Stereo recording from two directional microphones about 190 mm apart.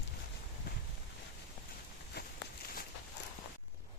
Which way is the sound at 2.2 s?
60° left (ahead or behind).